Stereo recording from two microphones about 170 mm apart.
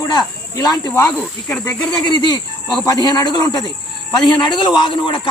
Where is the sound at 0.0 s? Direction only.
20° left (ahead or behind).